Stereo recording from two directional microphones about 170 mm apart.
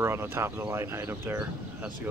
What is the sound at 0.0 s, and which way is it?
Speech, 15° right (ahead or behind).